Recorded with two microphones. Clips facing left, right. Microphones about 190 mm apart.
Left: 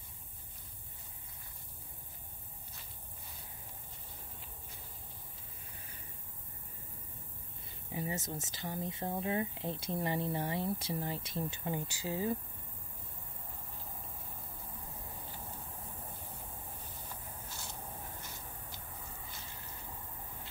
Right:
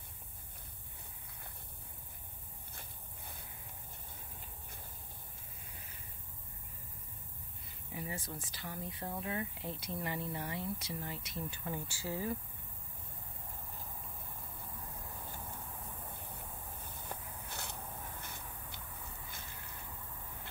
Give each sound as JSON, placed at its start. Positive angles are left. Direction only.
{"t": 2.7, "sound": "walk", "side_deg": -55}
{"t": 7.9, "sound": "speech", "side_deg": 20}
{"t": 17.1, "sound": "a sound", "side_deg": -60}